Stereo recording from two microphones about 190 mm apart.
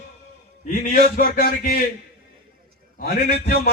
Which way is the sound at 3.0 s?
55° left (ahead or behind).